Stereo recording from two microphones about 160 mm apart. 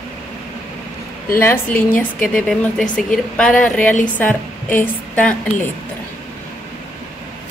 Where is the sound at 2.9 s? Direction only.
5° left (ahead or behind).